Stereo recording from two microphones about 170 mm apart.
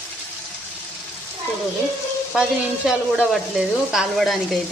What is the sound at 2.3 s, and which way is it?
Speech, 5° right (ahead or behind).